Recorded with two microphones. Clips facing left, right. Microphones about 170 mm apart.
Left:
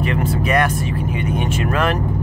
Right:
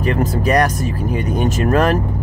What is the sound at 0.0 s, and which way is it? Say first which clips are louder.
Vehicle: right 3 dB; 40° right (ahead or behind).